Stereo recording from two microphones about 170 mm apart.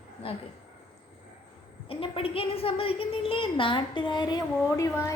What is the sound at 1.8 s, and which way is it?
A woman's voice, 30° left (ahead or behind).